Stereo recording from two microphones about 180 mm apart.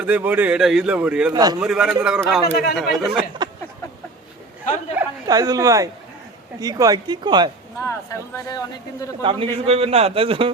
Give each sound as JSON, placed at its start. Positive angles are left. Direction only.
{"t": 0.0, "sound": "speech", "side_deg": -10}
{"t": 1.3, "sound": "a woman's voice", "side_deg": -20}
{"t": 1.5, "sound": "speech", "side_deg": -5}
{"t": 2.2, "sound": "speech", "side_deg": 5}
{"t": 3.4, "sound": "a sound", "side_deg": -25}
{"t": 4.9, "sound": "a woman's voice", "side_deg": -20}
{"t": 8.4, "sound": "speech", "side_deg": 20}
{"t": 9.2, "sound": "a man's voice", "side_deg": -30}